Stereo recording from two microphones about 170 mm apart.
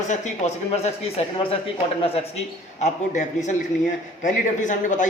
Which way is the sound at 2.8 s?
45° left (ahead or behind).